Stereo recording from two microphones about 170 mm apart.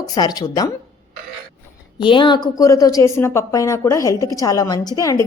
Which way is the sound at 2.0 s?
30° left (ahead or behind).